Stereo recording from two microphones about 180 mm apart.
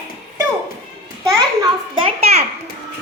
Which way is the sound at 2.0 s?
35° right (ahead or behind).